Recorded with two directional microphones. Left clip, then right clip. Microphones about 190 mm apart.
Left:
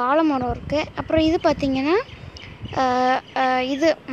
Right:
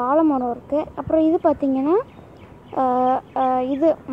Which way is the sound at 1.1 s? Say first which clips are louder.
Right 1 dB; 5° left (ahead or behind).